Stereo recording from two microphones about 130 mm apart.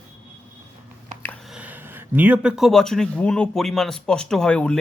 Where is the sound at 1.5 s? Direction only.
10° right (ahead or behind).